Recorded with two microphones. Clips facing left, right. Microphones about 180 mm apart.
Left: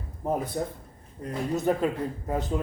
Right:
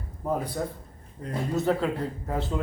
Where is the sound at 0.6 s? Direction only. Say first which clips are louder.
Left 1 dB; 25° left (ahead or behind).